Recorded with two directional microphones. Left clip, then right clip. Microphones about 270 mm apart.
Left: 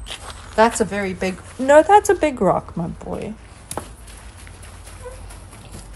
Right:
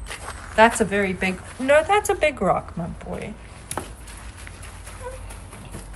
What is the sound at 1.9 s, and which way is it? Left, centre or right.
Speech, left.